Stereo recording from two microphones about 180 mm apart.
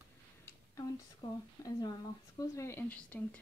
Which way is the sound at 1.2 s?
25° left (ahead or behind).